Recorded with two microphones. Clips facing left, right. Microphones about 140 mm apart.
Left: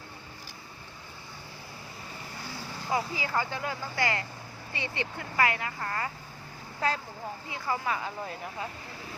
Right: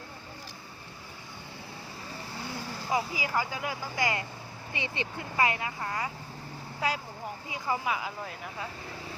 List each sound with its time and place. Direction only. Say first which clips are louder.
2.9 s speech: even; 15° right (ahead or behind)